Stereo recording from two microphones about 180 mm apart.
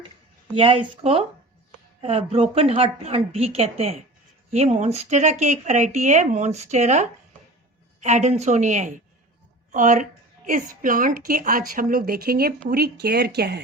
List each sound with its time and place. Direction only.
0.5 s a woman's voice: 30° right (ahead or behind); by 13.6 s 65° right (ahead or behind)